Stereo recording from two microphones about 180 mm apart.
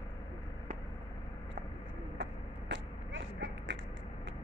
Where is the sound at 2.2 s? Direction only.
90° right.